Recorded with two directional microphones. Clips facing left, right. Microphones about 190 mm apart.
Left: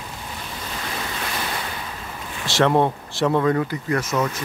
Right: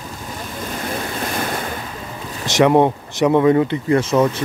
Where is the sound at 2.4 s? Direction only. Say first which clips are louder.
Right 5 dB; 15° right (ahead or behind).